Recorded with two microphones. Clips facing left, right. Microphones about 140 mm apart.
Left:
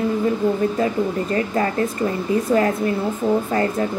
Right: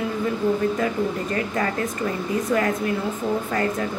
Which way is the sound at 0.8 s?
30° left (ahead or behind).